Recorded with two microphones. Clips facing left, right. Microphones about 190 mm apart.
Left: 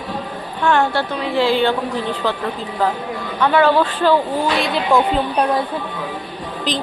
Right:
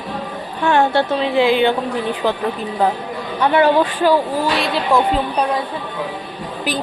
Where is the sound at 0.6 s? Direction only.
20° right (ahead or behind); by 5.5 s centre (ahead or behind).